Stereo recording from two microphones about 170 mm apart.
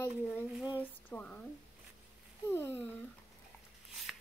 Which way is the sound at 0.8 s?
10° left (ahead or behind).